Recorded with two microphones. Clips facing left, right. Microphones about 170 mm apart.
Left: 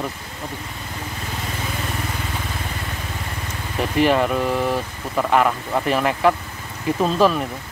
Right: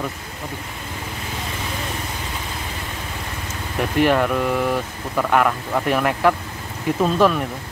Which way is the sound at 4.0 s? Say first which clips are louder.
Even; centre (ahead or behind).